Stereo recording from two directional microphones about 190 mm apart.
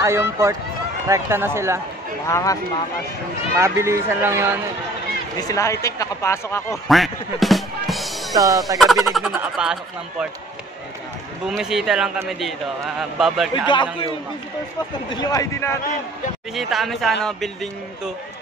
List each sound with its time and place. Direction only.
0.0 s speech: 15° right (ahead or behind)
2.2 s speech: 15° left (ahead or behind)
3.5 s speech: 15° right (ahead or behind)
5.4 s speech: 15° left (ahead or behind)
6.9 s music: centre (ahead or behind)
8.4 s speech: 20° right (ahead or behind)
8.7 s a man's voice: centre (ahead or behind)
11.4 s a man's voice: centre (ahead or behind)
15.0 s a man's voice: 20° left (ahead or behind)
16.5 s a man's voice: centre (ahead or behind)